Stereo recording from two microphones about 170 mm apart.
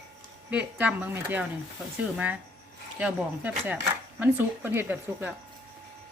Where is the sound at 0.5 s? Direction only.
10° right (ahead or behind).